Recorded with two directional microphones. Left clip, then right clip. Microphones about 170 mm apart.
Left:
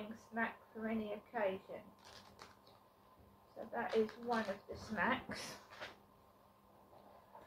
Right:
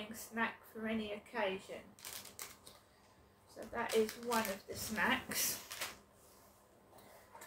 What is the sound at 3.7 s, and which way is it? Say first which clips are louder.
A woman's voice: right 2 dB; 20° right (ahead or behind).